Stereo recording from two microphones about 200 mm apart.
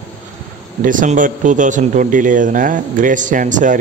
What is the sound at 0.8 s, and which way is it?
Speech, 40° right (ahead or behind).